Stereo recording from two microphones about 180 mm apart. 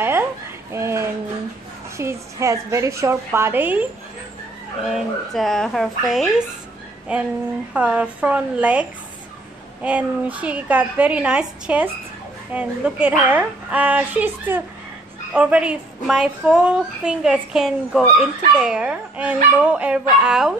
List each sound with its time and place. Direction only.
0.7 s a woman's voice: 15° right (ahead or behind)
4.8 s a woman's voice: centre (ahead or behind)